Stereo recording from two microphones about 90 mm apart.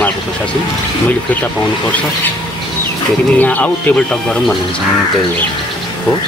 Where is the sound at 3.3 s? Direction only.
15° left (ahead or behind).